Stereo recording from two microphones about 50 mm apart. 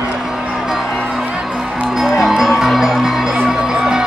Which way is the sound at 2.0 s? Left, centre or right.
Centre.